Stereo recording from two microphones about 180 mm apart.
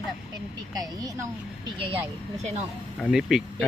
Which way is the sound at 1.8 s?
30° right (ahead or behind).